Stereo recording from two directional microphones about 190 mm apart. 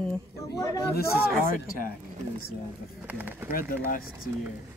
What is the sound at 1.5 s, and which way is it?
Speech, 45° left (ahead or behind).